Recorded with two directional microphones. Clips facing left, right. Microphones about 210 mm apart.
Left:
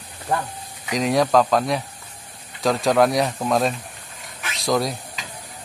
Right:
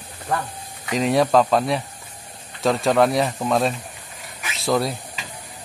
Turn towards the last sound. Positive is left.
turn(degrees=-5)  # may be behind; listen again after turning